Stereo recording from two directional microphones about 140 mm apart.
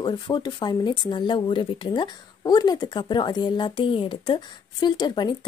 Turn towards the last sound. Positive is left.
turn(degrees=30)  # may be behind; listen again after turning